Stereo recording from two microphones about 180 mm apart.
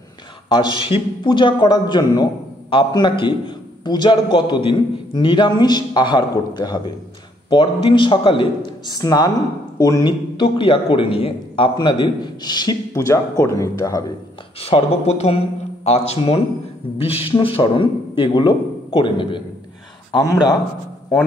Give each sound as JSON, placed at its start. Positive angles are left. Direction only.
{"t": 0.5, "sound": "a man's voice", "side_deg": 25}
{"t": 14.6, "sound": "speech", "side_deg": 30}
{"t": 17.4, "sound": "a man's voice", "side_deg": 30}